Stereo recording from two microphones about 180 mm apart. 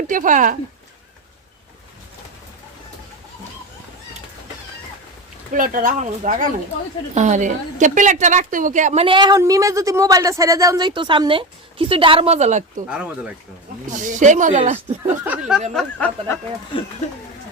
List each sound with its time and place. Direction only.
0.1 s speech: 45° right (ahead or behind)
5.5 s a woman's voice: 50° right (ahead or behind)
12.9 s speech: 5° right (ahead or behind)
13.9 s speech: 45° right (ahead or behind)
15.0 s speech: 10° right (ahead or behind)
15.7 s speech: 5° left (ahead or behind)